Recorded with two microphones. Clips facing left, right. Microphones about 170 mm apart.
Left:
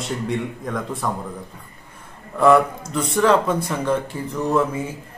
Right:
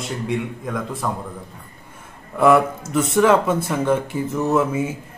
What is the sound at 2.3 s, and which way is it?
Speech, 5° right (ahead or behind).